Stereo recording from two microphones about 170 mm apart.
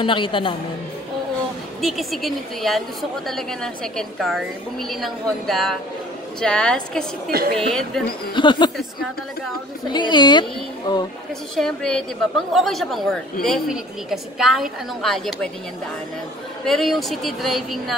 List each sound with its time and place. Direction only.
0.0 s a woman's voice: 30° left (ahead or behind)
1.8 s a woman's voice: centre (ahead or behind)
7.2 s a woman's voice: 65° right (ahead or behind)
7.5 s a woman's voice: centre (ahead or behind)
8.4 s a woman's voice: 25° left (ahead or behind)
9.9 s a woman's voice: 25° left (ahead or behind)
11.5 s a woman's voice: 5° left (ahead or behind)
16.6 s a woman's voice: centre (ahead or behind)